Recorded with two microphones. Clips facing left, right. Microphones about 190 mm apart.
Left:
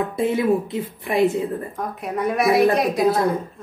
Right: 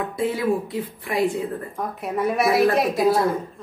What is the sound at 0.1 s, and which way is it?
A woman's voice, 20° left (ahead or behind).